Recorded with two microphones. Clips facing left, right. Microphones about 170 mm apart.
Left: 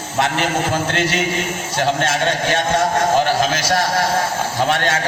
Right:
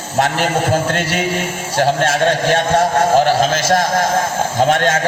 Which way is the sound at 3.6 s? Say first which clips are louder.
Right 3 dB; 50° right (ahead or behind).